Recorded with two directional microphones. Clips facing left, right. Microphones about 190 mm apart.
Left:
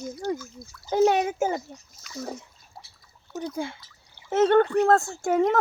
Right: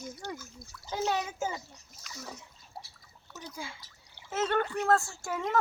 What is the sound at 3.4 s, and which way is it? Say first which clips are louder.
Speech: left 11 dB; 60° left (ahead or behind).